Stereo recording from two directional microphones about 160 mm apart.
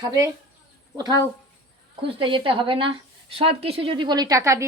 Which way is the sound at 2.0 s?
35° right (ahead or behind).